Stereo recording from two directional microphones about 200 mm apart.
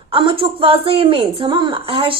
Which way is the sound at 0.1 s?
25° right (ahead or behind).